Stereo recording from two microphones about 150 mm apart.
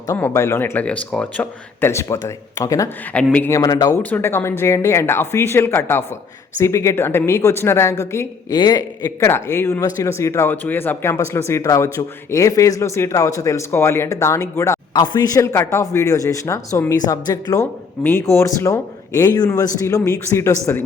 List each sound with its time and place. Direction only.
0.1 s a woman's voice: 20° left (ahead or behind)
15.0 s a woman's voice: 30° left (ahead or behind)